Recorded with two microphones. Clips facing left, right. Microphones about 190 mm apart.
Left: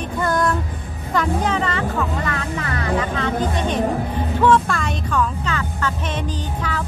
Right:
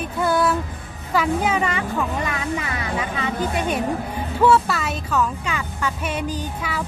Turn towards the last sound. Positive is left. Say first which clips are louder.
# left 1 dB
turn(degrees=-10)  # may be behind; listen again after turning